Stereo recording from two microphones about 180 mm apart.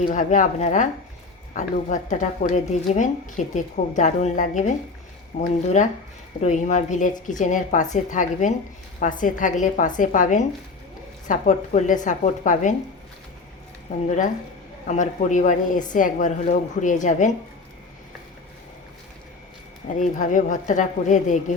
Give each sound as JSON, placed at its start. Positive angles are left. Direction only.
{"t": 0.1, "sound": "a woman's voice", "side_deg": 45}
{"t": 14.8, "sound": "a woman's voice", "side_deg": 45}
{"t": 20.0, "sound": "a woman's voice", "side_deg": 45}